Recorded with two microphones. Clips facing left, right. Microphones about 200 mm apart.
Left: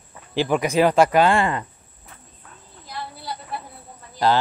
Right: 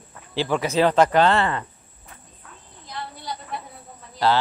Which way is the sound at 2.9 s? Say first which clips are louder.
Even; 5° left (ahead or behind).